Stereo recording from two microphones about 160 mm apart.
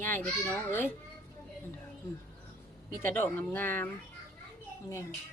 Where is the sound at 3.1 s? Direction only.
10° left (ahead or behind).